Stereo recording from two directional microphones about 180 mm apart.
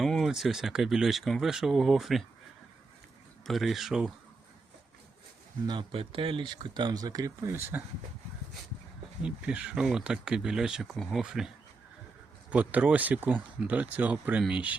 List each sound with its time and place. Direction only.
0.0 s speech: centre (ahead or behind)
3.4 s speech: centre (ahead or behind)
5.6 s speech: 30° right (ahead or behind); by 7.9 s 10° right (ahead or behind)
9.2 s speech: 5° right (ahead or behind)